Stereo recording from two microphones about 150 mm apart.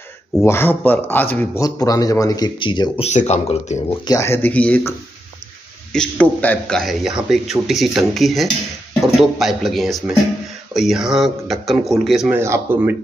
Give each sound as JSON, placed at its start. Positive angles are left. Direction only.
{"t": 0.5, "sound": "speech", "side_deg": 15}
{"t": 1.6, "sound": "speech", "side_deg": 25}
{"t": 3.1, "sound": "speech", "side_deg": 50}
{"t": 4.0, "sound": "speech", "side_deg": 20}
{"t": 5.9, "sound": "speech", "side_deg": 10}
{"t": 12.3, "sound": "speech", "side_deg": -15}